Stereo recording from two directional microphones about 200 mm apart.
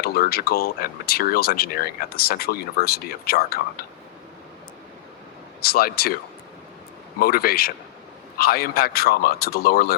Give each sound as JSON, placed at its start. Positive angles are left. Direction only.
{"t": 0.0, "sound": "speech", "side_deg": 50}
{"t": 5.6, "sound": "speech", "side_deg": 50}
{"t": 7.2, "sound": "speech", "side_deg": 50}